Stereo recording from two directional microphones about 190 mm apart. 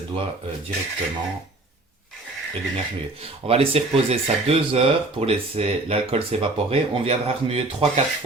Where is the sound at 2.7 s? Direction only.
30° right (ahead or behind).